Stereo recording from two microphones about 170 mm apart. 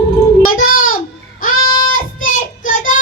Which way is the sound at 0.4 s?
55° left (ahead or behind).